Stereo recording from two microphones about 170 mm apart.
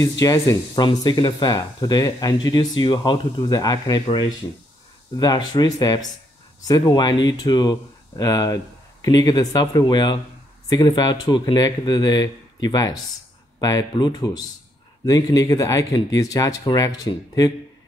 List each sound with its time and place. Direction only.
0.2 s speech: 20° left (ahead or behind)